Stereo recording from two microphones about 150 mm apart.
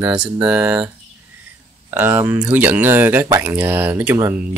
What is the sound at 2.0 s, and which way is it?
Speech, 15° right (ahead or behind).